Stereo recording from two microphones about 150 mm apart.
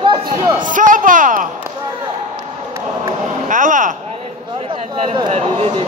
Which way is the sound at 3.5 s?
60° right (ahead or behind).